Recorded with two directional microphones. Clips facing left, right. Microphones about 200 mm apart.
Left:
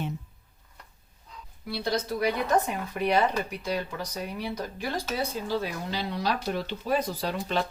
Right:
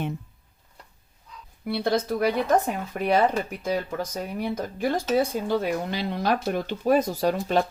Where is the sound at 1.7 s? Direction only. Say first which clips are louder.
Right 5 dB; 55° right (ahead or behind).